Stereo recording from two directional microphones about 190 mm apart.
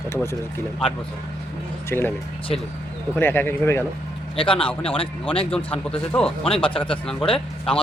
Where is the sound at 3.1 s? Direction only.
10° left (ahead or behind).